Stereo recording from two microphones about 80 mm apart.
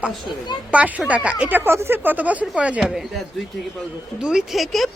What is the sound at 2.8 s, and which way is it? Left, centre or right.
Speech, centre.